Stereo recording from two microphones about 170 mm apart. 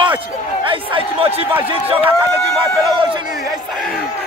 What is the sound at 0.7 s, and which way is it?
Speech, 30° right (ahead or behind).